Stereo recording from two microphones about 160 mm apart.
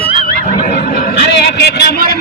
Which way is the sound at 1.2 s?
90° left.